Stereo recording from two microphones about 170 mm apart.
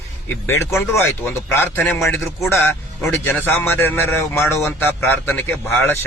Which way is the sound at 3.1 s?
10° left (ahead or behind).